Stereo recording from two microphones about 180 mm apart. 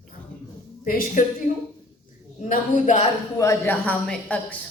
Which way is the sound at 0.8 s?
50° left (ahead or behind).